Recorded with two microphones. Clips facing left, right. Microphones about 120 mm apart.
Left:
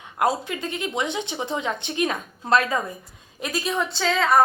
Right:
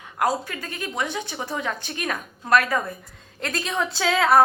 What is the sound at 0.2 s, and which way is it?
A woman's voice, 20° left (ahead or behind).